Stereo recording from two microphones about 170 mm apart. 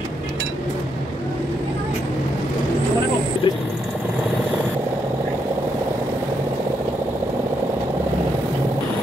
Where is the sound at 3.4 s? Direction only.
30° left (ahead or behind).